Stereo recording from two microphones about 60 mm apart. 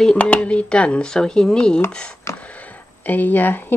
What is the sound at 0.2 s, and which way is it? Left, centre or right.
Speech, centre.